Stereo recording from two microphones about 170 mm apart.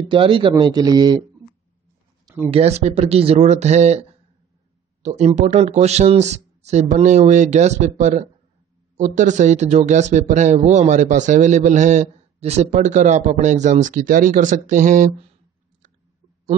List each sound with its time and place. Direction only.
0.1 s speech: 30° right (ahead or behind)
2.5 s speech: 40° right (ahead or behind)
5.0 s speech: 40° right (ahead or behind)